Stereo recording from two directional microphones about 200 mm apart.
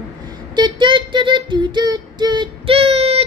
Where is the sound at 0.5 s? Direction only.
25° right (ahead or behind).